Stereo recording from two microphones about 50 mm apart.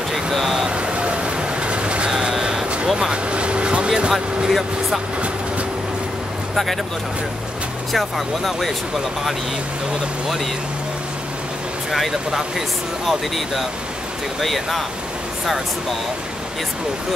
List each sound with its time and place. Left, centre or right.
0.1 s speech: centre
0.7 s vehicle: right
4.5 s speech: centre
6.5 s speech: centre
8.5 s speech: centre
10.2 s speech: centre
11.9 s speech: centre
13.0 s speech: centre